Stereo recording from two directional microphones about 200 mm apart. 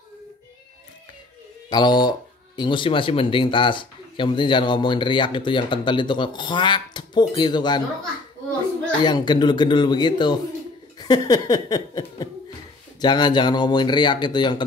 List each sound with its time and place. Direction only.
1.7 s speech: 20° left (ahead or behind)
9.0 s speech: 20° left (ahead or behind)